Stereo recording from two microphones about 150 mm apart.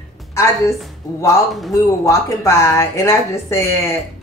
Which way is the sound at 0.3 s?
20° left (ahead or behind).